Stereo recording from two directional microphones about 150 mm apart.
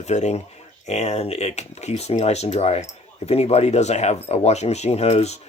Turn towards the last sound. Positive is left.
turn(degrees=45)  # may be behind; listen again after turning